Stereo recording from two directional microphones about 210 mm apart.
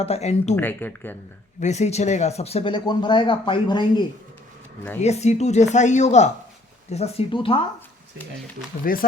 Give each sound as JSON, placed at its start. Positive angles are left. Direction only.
{"t": 0.0, "sound": "speech", "side_deg": 30}
{"t": 0.5, "sound": "speech", "side_deg": 10}
{"t": 1.6, "sound": "speech", "side_deg": 30}
{"t": 4.9, "sound": "speech", "side_deg": 30}
{"t": 8.8, "sound": "speech", "side_deg": 45}